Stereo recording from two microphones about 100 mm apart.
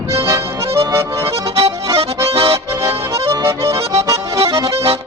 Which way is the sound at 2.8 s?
30° right (ahead or behind).